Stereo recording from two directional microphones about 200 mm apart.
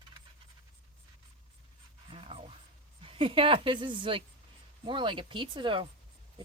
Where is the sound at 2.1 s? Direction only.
30° right (ahead or behind).